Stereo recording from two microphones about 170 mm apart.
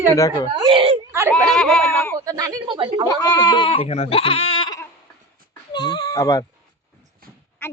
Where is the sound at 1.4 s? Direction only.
5° left (ahead or behind).